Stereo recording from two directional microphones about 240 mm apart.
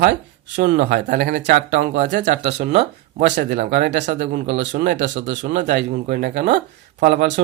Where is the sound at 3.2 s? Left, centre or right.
Right.